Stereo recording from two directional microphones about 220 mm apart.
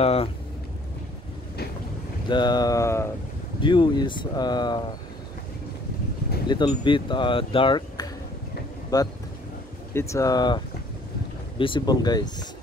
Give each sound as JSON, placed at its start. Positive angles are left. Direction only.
{"t": 0.0, "sound": "speech", "side_deg": 25}
{"t": 2.2, "sound": "speech", "side_deg": 20}
{"t": 6.4, "sound": "speech", "side_deg": 20}